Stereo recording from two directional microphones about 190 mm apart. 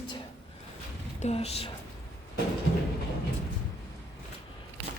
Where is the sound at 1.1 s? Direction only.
35° left (ahead or behind).